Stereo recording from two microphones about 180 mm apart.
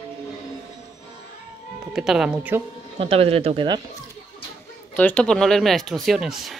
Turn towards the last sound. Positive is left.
turn(degrees=0)  # may be behind; listen again after turning